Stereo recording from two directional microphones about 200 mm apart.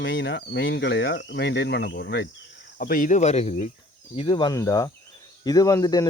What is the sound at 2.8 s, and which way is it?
Speech, 45° left (ahead or behind).